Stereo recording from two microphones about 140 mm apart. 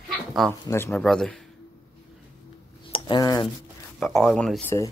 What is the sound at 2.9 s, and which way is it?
Speech, 30° left (ahead or behind).